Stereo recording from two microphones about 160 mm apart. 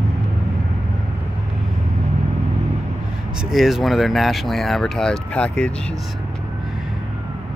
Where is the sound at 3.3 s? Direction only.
5° right (ahead or behind).